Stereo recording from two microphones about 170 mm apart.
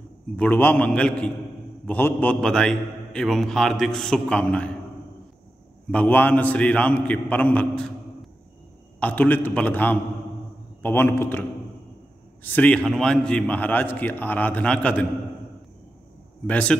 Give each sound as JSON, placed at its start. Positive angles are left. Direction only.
{"t": 0.4, "sound": "a man's voice", "side_deg": 10}
{"t": 5.9, "sound": "a man's voice", "side_deg": 10}
{"t": 12.4, "sound": "a man's voice", "side_deg": 10}
{"t": 16.4, "sound": "a man's voice", "side_deg": 5}